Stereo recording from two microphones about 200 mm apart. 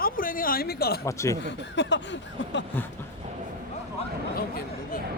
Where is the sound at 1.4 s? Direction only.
60° left (ahead or behind).